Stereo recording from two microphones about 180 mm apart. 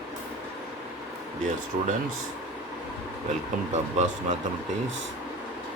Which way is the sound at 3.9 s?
40° right (ahead or behind).